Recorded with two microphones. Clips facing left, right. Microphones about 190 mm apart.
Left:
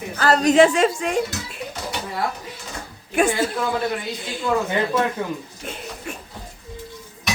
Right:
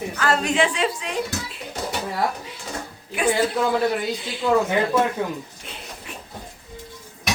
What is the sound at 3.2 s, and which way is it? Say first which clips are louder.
Speech: left 1 dB; 45° left (ahead or behind).